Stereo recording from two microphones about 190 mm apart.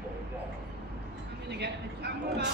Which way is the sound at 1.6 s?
60° right (ahead or behind).